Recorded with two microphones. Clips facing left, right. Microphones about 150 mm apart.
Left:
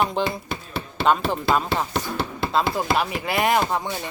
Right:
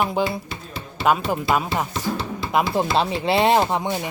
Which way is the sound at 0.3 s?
60° left (ahead or behind).